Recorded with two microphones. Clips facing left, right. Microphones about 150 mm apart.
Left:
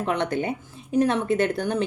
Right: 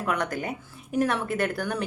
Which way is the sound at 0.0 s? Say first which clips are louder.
Left 4 dB; 25° left (ahead or behind).